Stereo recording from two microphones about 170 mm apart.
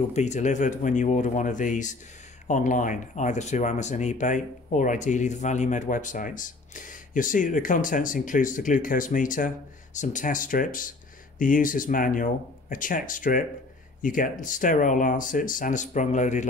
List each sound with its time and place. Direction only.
0.1 s speech: 45° left (ahead or behind)